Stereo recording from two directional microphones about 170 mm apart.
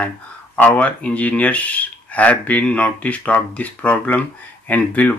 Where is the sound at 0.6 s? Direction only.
10° left (ahead or behind).